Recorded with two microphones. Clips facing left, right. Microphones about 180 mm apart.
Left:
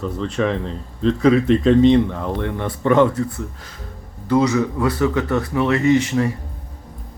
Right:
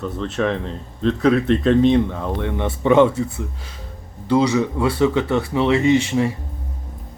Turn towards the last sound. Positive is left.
turn(degrees=-25)  # may be behind; listen again after turning